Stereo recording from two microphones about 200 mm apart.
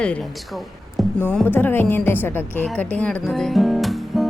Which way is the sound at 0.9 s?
Centre (ahead or behind).